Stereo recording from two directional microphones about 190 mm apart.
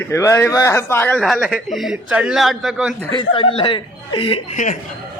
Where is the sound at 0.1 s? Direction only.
15° left (ahead or behind).